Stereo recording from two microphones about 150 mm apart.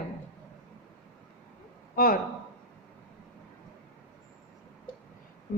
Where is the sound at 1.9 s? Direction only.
75° left (ahead or behind).